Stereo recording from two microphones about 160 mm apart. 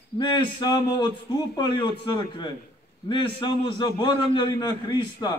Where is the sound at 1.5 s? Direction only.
30° left (ahead or behind).